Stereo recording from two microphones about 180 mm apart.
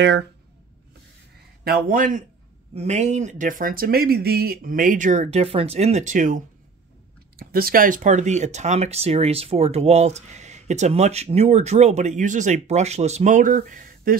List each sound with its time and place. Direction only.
1.6 s speech: 55° right (ahead or behind)
2.7 s speech: 35° right (ahead or behind)
7.3 s speech: 55° right (ahead or behind)